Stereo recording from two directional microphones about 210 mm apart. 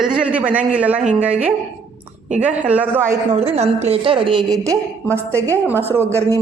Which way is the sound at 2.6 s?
5° right (ahead or behind).